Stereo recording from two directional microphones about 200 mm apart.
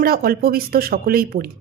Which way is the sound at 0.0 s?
50° right (ahead or behind).